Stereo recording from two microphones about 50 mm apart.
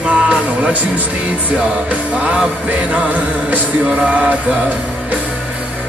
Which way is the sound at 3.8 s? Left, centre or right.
Right.